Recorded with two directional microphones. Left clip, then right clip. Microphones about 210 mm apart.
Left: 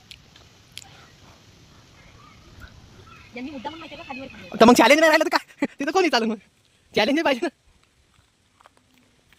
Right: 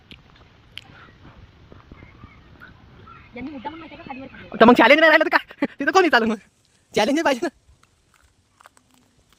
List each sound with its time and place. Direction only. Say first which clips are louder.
2.6 s bird: right 4 dB; 15° left (ahead or behind)
3.3 s a man's voice: even; 10° left (ahead or behind)